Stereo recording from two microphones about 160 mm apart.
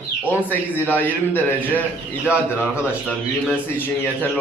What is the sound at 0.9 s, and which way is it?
Speech, 10° left (ahead or behind).